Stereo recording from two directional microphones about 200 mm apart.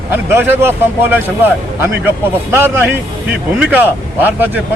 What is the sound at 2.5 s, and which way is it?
Speech, 10° right (ahead or behind).